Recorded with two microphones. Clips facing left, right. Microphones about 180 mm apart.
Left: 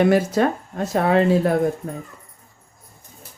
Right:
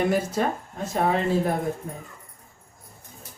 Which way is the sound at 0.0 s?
80° left.